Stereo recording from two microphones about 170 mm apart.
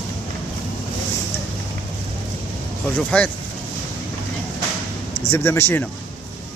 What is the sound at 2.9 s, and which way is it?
Speech, 5° left (ahead or behind).